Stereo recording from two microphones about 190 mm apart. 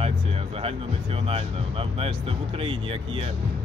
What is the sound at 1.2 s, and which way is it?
Speech, 30° right (ahead or behind).